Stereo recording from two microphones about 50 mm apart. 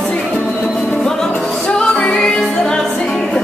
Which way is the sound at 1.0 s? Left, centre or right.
Centre.